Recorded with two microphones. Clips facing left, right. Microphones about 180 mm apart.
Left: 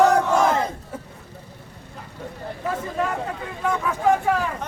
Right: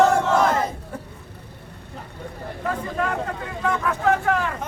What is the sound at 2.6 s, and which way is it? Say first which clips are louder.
Speech: even; 5° left (ahead or behind).